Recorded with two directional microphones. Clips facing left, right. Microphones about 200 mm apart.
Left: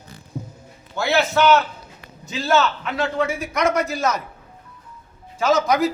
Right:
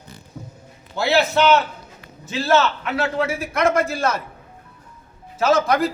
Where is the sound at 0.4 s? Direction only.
20° left (ahead or behind).